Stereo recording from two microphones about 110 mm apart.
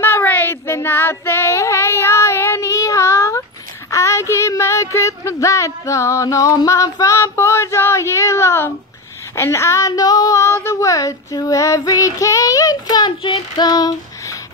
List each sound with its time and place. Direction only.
0.0 s child singing: 20° left (ahead or behind)
9.3 s female singing: 25° left (ahead or behind)